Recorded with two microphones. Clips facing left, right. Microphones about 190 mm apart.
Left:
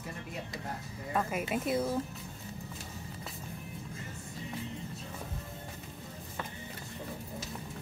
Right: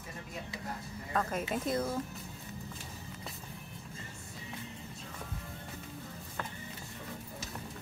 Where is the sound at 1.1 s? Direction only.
10° left (ahead or behind).